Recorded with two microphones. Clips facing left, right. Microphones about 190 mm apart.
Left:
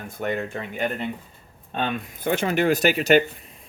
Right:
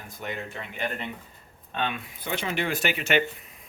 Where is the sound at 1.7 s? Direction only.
40° left (ahead or behind).